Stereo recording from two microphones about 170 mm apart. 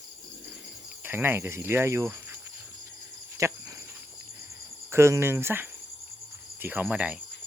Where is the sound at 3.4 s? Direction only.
20° right (ahead or behind).